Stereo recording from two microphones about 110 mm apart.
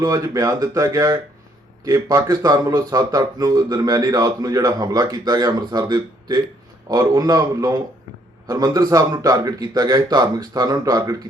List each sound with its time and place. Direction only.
0.0 s speech: 35° right (ahead or behind)